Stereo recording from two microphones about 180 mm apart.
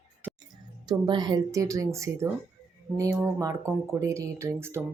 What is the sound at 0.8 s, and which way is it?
Speech, 25° right (ahead or behind).